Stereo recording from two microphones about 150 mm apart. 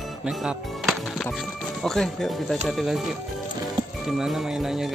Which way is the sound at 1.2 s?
5° left (ahead or behind).